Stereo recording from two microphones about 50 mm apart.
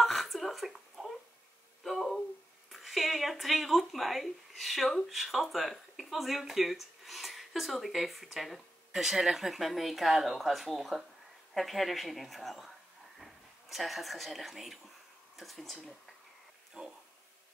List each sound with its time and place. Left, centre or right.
0.0 s a sound: centre
2.7 s a woman's voice: centre
16.8 s speech: centre